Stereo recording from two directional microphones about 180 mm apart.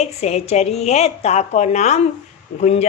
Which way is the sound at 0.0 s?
40° left (ahead or behind).